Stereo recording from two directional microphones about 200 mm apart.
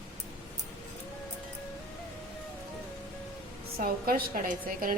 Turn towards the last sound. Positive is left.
turn(degrees=-45)  # may be behind; listen again after turning